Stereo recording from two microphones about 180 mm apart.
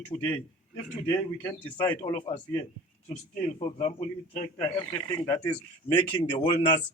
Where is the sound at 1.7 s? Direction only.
25° left (ahead or behind).